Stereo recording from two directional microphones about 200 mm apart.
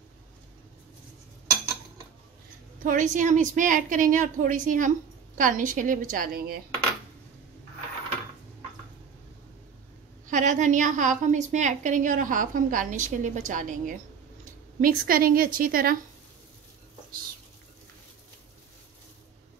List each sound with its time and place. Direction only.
2.8 s a woman's voice: 40° right (ahead or behind)
10.2 s a woman's voice: 40° right (ahead or behind)